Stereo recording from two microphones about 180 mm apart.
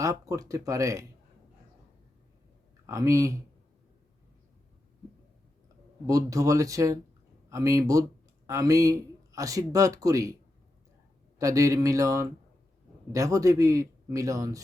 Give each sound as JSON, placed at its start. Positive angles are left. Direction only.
{"t": 0.0, "sound": "speech", "side_deg": -20}
{"t": 2.8, "sound": "speech", "side_deg": -15}
{"t": 6.1, "sound": "speech", "side_deg": -20}
{"t": 11.3, "sound": "speech", "side_deg": -15}